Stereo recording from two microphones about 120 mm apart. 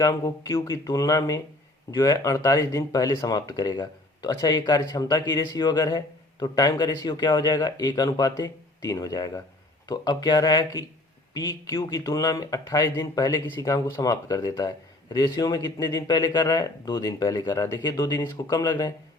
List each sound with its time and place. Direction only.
0.0 s speech: 35° left (ahead or behind)